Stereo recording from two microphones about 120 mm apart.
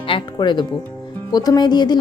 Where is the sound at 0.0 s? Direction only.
45° left (ahead or behind).